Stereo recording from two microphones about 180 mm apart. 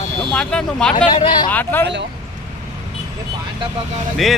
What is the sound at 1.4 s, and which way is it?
Speech, 10° left (ahead or behind).